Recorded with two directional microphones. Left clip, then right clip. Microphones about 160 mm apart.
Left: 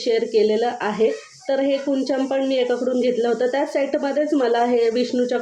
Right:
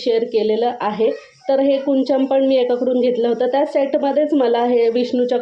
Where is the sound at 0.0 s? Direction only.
25° right (ahead or behind).